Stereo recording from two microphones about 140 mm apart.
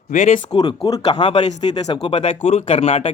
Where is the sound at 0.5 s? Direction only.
30° left (ahead or behind).